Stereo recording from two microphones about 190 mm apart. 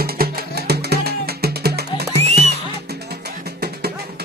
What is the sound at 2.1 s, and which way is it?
Music, 30° right (ahead or behind).